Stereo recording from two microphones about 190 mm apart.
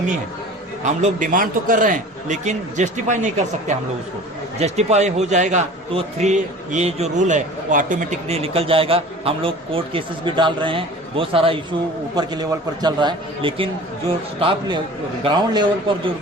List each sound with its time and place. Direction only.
0.9 s a man's voice: 40° right (ahead or behind); by 15.6 s 25° right (ahead or behind)